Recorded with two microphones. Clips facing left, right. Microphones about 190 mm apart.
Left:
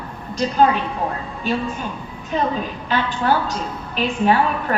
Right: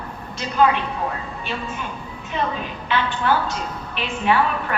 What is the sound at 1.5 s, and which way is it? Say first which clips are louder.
A woman's voice: left 8 dB; 40° left (ahead or behind).